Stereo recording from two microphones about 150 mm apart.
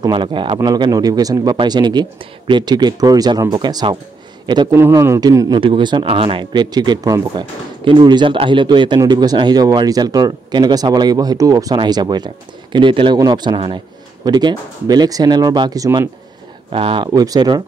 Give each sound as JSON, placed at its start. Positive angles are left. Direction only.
{"t": 0.0, "sound": "a man's voice", "side_deg": -35}
{"t": 4.7, "sound": "a man's voice", "side_deg": -15}
{"t": 16.7, "sound": "a man's voice", "side_deg": -35}